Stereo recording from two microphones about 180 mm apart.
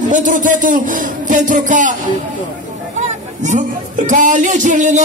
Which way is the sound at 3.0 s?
40° right (ahead or behind).